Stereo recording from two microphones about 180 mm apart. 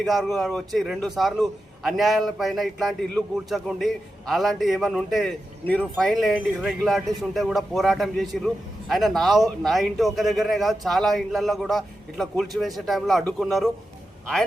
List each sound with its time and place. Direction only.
0.0 s a man's voice: centre (ahead or behind)